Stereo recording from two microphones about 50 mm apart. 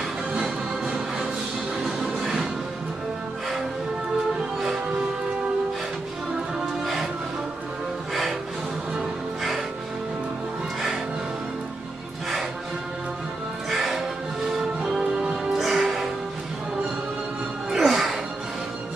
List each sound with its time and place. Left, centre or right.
0.3 s music: centre
6.6 s music: centre
8.1 s music: centre
13.7 s music: centre
14.6 s music: centre
17.6 s music: centre